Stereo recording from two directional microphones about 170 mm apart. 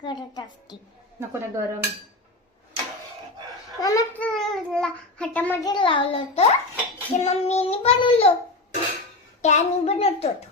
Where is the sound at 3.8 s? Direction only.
20° left (ahead or behind).